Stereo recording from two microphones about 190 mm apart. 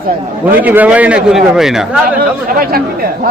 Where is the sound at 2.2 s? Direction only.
50° right (ahead or behind).